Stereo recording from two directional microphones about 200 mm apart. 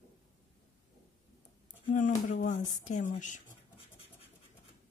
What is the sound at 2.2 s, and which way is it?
Speech, 40° left (ahead or behind).